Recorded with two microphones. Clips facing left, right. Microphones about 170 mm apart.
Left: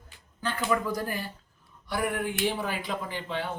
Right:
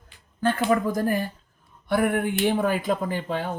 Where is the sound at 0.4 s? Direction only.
50° right (ahead or behind).